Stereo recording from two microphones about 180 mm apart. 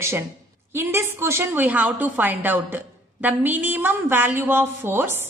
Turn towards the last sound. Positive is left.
turn(degrees=-10)  # may be behind; listen again after turning